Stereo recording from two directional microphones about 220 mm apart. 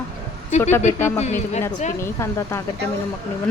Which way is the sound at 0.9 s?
10° left (ahead or behind).